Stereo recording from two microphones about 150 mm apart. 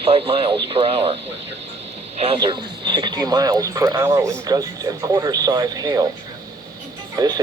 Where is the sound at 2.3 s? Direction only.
30° right (ahead or behind).